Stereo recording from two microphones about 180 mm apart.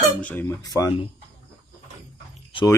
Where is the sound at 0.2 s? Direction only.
10° left (ahead or behind).